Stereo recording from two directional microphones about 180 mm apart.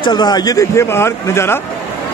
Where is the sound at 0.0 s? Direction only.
25° left (ahead or behind).